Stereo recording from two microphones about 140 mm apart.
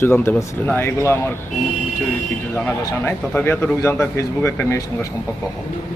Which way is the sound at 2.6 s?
15° left (ahead or behind).